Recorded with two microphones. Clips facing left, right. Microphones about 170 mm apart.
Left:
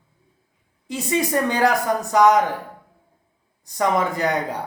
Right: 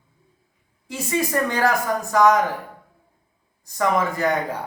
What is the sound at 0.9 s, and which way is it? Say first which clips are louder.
A woman's voice: left 2 dB; 20° left (ahead or behind).